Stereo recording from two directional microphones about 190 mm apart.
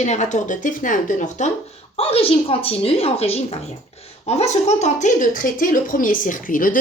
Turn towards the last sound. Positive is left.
turn(degrees=45)  # may be behind; listen again after turning